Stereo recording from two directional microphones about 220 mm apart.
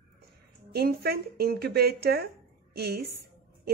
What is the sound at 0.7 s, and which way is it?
A woman's voice, 45° right (ahead or behind).